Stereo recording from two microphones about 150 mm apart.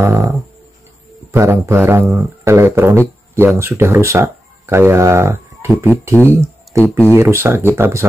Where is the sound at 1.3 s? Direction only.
15° right (ahead or behind).